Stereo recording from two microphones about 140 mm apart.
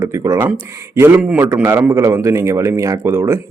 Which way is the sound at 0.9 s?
15° right (ahead or behind).